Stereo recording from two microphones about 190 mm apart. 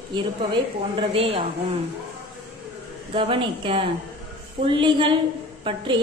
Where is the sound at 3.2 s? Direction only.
30° right (ahead or behind).